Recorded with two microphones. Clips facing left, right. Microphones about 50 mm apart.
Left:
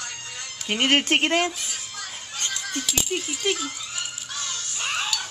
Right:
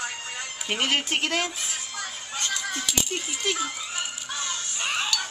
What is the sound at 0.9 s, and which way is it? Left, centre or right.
Speech, left.